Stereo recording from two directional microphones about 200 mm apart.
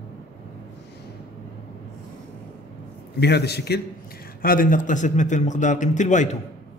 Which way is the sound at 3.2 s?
55° left (ahead or behind).